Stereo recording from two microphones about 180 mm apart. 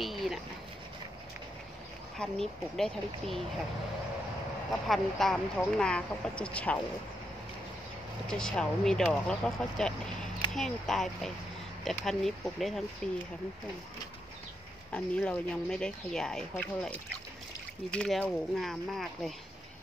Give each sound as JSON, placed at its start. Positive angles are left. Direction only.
{"t": 0.0, "sound": "a sound", "side_deg": 0}
{"t": 2.1, "sound": "speech", "side_deg": 0}
{"t": 4.8, "sound": "speech", "side_deg": 0}
{"t": 8.3, "sound": "speech", "side_deg": 5}
{"t": 14.9, "sound": "speech", "side_deg": 5}
{"t": 17.9, "sound": "speech", "side_deg": 5}